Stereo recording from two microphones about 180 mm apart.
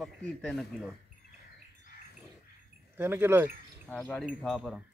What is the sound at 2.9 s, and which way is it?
Speech, 10° right (ahead or behind).